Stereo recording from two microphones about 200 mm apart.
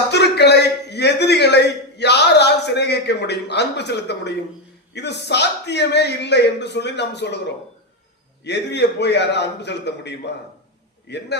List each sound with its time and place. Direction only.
0.1 s a sound: 55° left (ahead or behind)
4.9 s a man's voice: 60° left (ahead or behind)
8.4 s a man's voice: 60° left (ahead or behind)